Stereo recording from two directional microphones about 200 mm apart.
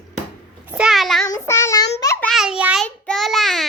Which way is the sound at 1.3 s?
15° left (ahead or behind).